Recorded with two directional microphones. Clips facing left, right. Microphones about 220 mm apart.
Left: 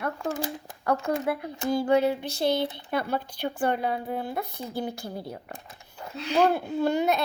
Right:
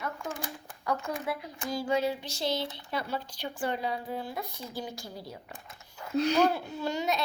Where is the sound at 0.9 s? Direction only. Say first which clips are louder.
Left 6 dB; 60° left (ahead or behind).